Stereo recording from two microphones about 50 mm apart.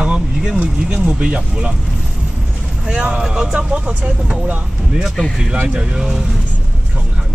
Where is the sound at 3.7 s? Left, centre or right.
Right.